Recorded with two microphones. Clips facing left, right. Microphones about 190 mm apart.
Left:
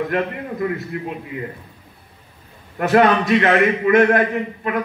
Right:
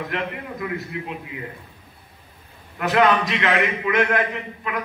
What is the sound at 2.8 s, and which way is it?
A man's voice, 45° left (ahead or behind).